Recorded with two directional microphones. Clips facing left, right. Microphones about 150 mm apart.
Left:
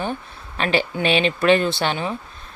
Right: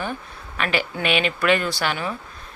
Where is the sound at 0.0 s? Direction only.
30° left (ahead or behind).